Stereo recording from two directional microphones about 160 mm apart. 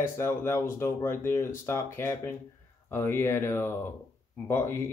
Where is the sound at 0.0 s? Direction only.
15° left (ahead or behind).